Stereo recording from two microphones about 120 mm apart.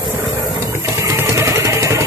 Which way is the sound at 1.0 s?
25° right (ahead or behind).